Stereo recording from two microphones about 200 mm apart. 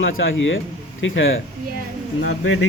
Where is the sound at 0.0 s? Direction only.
75° left (ahead or behind).